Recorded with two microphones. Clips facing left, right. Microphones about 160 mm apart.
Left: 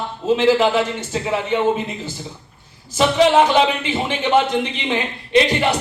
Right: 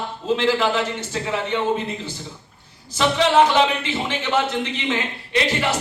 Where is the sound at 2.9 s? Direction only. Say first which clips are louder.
Left 3 dB; 15° left (ahead or behind).